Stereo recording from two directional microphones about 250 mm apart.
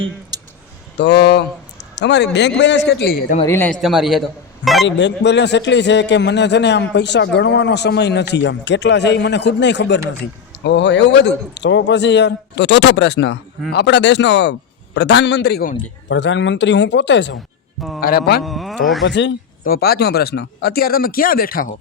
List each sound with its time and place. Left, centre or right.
0.9 s speech: left
3.4 s speech: centre
4.9 s speech: left
18.4 s speech: centre
19.0 s speech: left